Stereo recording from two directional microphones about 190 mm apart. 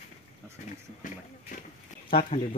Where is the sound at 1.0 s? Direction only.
45° left (ahead or behind).